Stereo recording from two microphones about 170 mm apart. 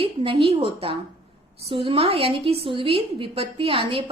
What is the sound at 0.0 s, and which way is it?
A woman's voice, 35° right (ahead or behind).